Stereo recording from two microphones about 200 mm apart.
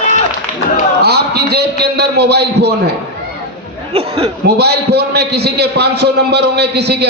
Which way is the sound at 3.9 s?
30° right (ahead or behind).